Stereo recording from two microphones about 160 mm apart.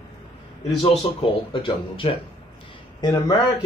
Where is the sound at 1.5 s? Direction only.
35° left (ahead or behind).